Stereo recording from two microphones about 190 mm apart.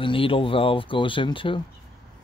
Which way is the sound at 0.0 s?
25° left (ahead or behind).